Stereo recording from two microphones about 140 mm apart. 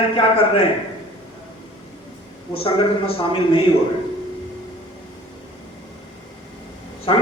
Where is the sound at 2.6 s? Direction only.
40° left (ahead or behind).